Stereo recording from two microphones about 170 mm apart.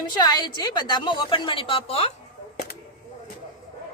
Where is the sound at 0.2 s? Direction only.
25° left (ahead or behind).